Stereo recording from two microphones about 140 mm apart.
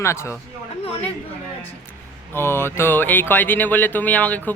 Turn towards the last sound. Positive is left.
turn(degrees=10)  # may be behind; listen again after turning